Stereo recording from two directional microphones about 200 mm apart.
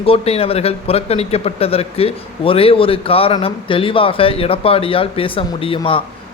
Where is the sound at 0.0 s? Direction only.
30° left (ahead or behind).